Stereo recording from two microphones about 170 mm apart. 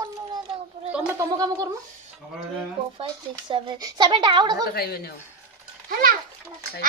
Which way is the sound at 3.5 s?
25° right (ahead or behind).